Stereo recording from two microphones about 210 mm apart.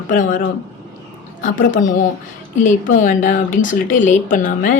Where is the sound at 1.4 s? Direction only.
40° left (ahead or behind).